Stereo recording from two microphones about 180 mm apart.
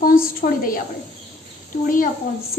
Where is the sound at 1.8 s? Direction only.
50° left (ahead or behind).